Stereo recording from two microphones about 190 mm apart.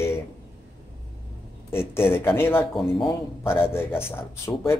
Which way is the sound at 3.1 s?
10° left (ahead or behind).